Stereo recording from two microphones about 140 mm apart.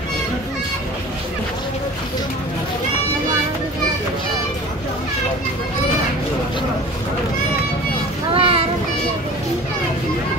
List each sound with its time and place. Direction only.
8.4 s child singing: 40° right (ahead or behind)